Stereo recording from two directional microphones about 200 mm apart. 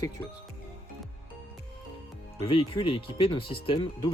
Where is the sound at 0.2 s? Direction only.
15° left (ahead or behind).